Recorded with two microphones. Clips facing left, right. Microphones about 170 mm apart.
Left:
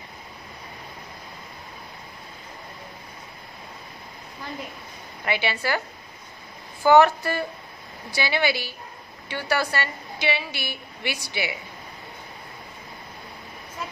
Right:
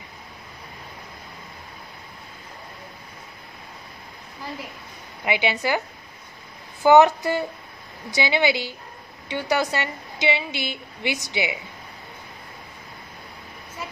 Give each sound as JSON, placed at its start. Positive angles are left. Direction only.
{"t": 5.2, "sound": "speech", "side_deg": -15}
{"t": 6.8, "sound": "a woman's voice", "side_deg": -20}